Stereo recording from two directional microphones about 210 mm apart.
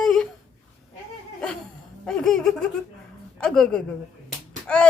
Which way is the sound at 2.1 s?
5° left (ahead or behind).